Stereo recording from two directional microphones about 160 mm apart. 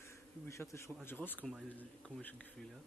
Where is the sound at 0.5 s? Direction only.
20° left (ahead or behind).